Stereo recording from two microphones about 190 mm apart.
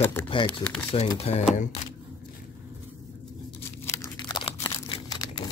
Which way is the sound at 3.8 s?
15° left (ahead or behind).